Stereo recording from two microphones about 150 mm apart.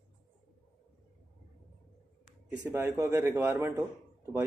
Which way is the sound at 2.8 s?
15° right (ahead or behind).